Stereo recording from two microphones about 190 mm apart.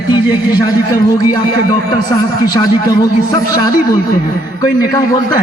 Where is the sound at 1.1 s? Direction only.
20° left (ahead or behind).